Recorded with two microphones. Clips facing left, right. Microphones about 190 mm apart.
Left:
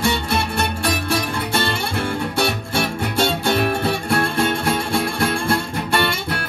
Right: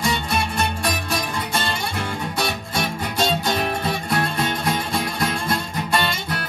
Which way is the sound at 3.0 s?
65° left (ahead or behind).